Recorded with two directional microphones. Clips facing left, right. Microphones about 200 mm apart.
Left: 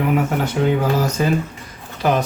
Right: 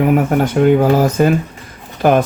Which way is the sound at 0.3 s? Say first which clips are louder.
Right 7 dB; 50° right (ahead or behind).